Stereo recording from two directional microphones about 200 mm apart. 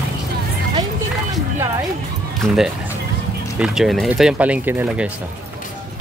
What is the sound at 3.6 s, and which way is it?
Speech, centre (ahead or behind).